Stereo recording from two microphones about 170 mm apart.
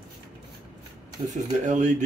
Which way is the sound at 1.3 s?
45° right (ahead or behind).